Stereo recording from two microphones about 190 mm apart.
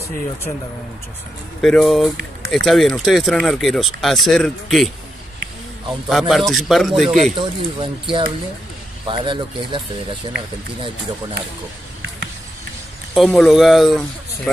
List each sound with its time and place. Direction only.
1.6 s speech: centre (ahead or behind)
6.0 s speech: centre (ahead or behind)
7.3 s speech: 25° right (ahead or behind)
13.1 s speech: centre (ahead or behind)